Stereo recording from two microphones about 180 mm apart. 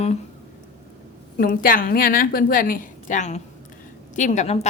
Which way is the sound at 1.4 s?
50° left (ahead or behind).